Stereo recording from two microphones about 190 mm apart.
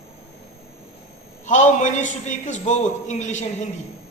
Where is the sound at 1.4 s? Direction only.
40° left (ahead or behind).